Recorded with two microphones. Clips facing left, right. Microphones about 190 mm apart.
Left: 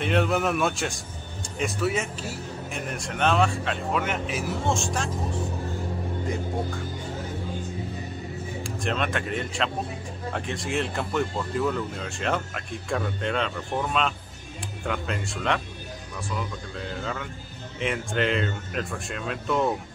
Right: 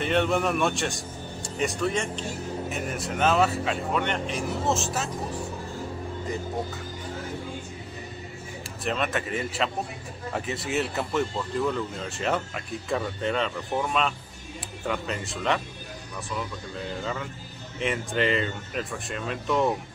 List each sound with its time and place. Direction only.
0.0 s a man's voice: centre (ahead or behind)
6.2 s a man's voice: centre (ahead or behind)
8.6 s a man's voice: 5° right (ahead or behind)